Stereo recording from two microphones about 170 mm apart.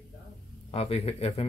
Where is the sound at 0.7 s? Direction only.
35° left (ahead or behind).